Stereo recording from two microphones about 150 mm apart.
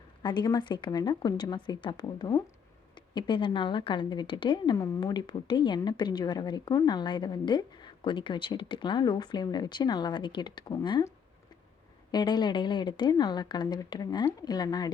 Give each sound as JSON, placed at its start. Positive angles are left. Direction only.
{"t": 0.2, "sound": "speech", "side_deg": 30}
{"t": 12.1, "sound": "speech", "side_deg": 30}